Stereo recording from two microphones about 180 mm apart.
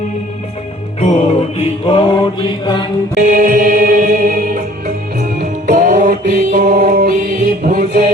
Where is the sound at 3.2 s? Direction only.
50° right (ahead or behind).